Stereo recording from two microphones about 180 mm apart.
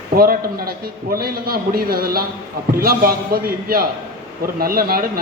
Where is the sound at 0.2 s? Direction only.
55° right (ahead or behind).